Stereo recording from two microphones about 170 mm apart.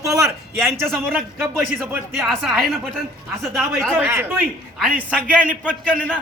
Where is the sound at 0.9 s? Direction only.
Centre (ahead or behind).